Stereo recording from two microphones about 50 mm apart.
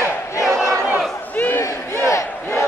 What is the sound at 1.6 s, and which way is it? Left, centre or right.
Battle cry, left.